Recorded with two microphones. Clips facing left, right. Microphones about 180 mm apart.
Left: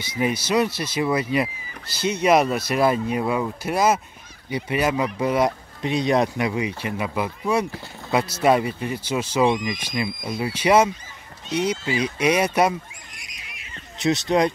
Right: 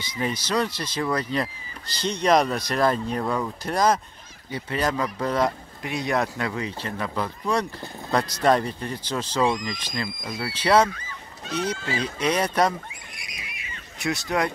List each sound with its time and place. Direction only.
0.0 s speech: 10° left (ahead or behind)
5.8 s speech: 20° left (ahead or behind)
13.9 s speech: 20° left (ahead or behind)